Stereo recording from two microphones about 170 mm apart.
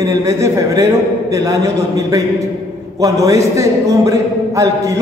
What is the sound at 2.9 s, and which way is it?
A man's voice, 20° right (ahead or behind).